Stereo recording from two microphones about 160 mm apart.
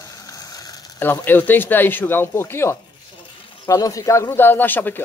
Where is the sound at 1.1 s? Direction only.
10° left (ahead or behind).